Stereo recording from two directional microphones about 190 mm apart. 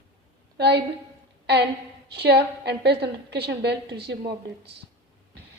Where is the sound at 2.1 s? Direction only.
60° right (ahead or behind).